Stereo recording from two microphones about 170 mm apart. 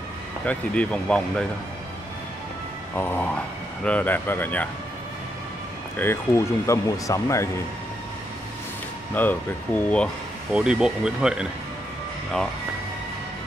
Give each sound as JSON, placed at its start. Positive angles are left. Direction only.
{"t": 0.5, "sound": "speech", "side_deg": 10}
{"t": 3.0, "sound": "speech", "side_deg": 10}
{"t": 5.9, "sound": "speech", "side_deg": 15}
{"t": 9.1, "sound": "speech", "side_deg": 10}
{"t": 10.5, "sound": "speech", "side_deg": -5}